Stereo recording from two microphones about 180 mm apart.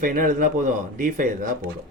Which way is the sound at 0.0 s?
50° right (ahead or behind).